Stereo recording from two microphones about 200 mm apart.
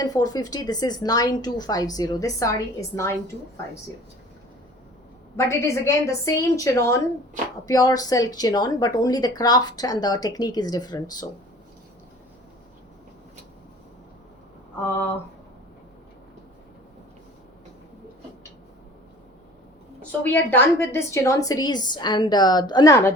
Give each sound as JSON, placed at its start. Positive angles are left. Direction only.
{"t": 0.0, "sound": "a woman's voice", "side_deg": 20}
{"t": 5.5, "sound": "a woman's voice", "side_deg": 15}
{"t": 20.0, "sound": "a woman's voice", "side_deg": 10}